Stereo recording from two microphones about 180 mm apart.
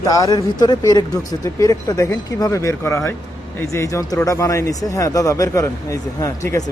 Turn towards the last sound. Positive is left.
turn(degrees=15)  # may be behind; listen again after turning